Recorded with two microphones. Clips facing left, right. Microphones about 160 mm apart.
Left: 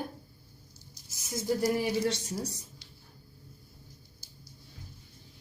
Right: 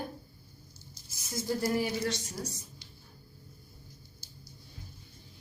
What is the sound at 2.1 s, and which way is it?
Speech, 30° left (ahead or behind).